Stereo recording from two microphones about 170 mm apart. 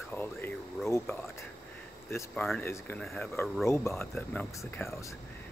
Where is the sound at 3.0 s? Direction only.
Centre (ahead or behind).